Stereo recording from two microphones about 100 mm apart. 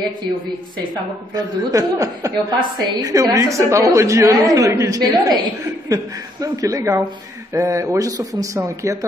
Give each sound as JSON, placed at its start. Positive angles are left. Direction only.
{"t": 1.3, "sound": "a woman's voice", "side_deg": -35}